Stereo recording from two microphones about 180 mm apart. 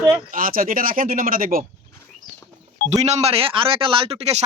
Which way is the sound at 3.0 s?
35° right (ahead or behind).